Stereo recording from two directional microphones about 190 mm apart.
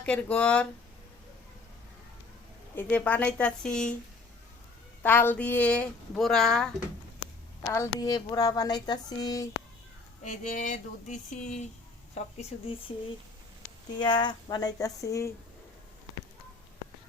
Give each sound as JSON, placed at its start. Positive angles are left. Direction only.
{"t": 0.0, "sound": "speech", "side_deg": 5}
{"t": 2.7, "sound": "speech", "side_deg": 10}
{"t": 5.0, "sound": "speech", "side_deg": 10}
{"t": 7.6, "sound": "speech", "side_deg": 15}
{"t": 10.2, "sound": "speech", "side_deg": 40}
{"t": 14.0, "sound": "speech", "side_deg": 25}